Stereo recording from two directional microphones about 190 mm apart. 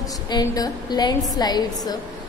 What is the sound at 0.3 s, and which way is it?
A woman's voice, 20° left (ahead or behind).